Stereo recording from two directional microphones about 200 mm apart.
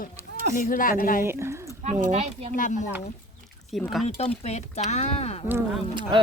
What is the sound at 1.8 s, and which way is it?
Speech, 35° right (ahead or behind).